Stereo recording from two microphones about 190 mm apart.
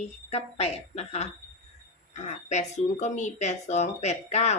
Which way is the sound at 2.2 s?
35° left (ahead or behind).